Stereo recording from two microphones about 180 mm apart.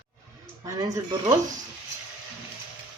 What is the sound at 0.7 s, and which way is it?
Speech, 20° right (ahead or behind).